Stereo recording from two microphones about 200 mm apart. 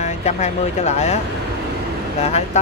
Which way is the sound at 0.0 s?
35° left (ahead or behind).